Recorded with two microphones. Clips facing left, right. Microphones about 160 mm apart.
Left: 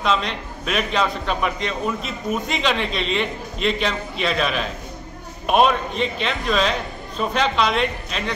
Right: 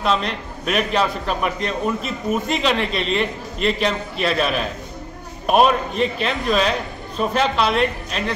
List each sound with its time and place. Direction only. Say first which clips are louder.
0.0 s a man's voice: right 1 dB; 5° right (ahead or behind)